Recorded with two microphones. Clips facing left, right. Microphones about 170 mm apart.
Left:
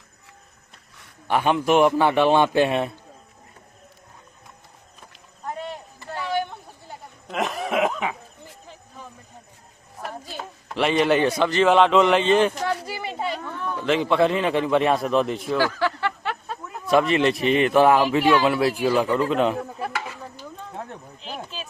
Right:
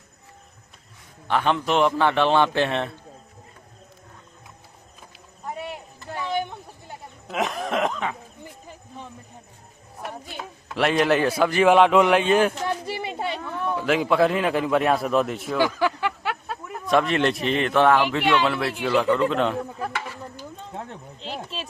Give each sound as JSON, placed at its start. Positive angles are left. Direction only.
{"t": 1.3, "sound": "a man's voice", "side_deg": 10}
{"t": 5.1, "sound": "a sound", "side_deg": -10}
{"t": 7.3, "sound": "cough", "side_deg": 0}
{"t": 10.8, "sound": "a man's voice", "side_deg": 0}
{"t": 13.6, "sound": "a man's voice", "side_deg": -10}
{"t": 15.5, "sound": "a man's voice", "side_deg": -15}
{"t": 18.9, "sound": "speech", "side_deg": 20}
{"t": 19.3, "sound": "a man's voice", "side_deg": 5}
{"t": 21.2, "sound": "a sound", "side_deg": -30}